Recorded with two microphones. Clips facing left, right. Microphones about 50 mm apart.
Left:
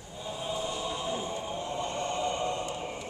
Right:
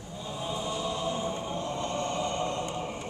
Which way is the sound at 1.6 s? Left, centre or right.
Centre.